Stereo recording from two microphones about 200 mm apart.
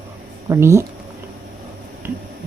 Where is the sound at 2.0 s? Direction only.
10° right (ahead or behind).